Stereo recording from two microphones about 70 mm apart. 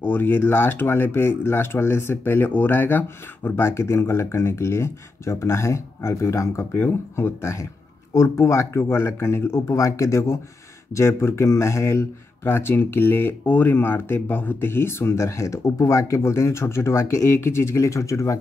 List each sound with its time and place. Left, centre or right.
0.0 s speech: left